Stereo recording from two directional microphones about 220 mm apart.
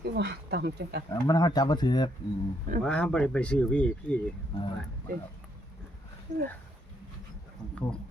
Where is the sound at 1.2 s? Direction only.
15° left (ahead or behind).